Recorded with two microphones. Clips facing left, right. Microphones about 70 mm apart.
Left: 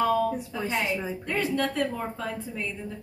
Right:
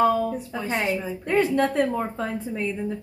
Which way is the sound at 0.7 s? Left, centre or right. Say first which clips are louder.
Right 3 dB; right.